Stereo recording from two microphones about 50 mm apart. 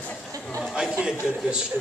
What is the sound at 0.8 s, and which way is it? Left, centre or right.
Speech, centre.